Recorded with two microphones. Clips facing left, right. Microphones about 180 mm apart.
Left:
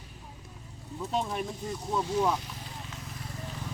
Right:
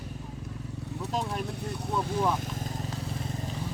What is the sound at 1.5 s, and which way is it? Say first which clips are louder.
Speech: right 1 dB; 65° right (ahead or behind).